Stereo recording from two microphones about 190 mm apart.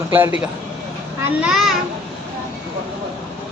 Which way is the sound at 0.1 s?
10° right (ahead or behind).